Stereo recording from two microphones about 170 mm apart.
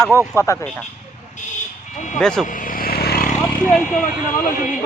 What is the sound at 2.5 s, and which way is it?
Vehicle, 55° left (ahead or behind).